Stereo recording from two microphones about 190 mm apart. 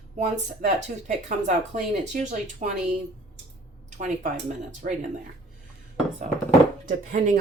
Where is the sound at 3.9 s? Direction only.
40° right (ahead or behind).